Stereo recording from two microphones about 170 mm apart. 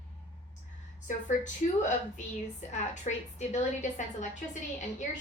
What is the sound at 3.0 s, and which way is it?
A woman's voice, 45° left (ahead or behind).